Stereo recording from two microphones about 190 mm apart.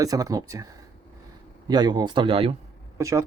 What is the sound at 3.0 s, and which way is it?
Speech, 15° right (ahead or behind).